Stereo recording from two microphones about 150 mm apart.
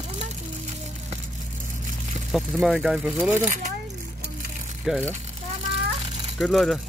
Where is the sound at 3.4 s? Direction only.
55° right (ahead or behind).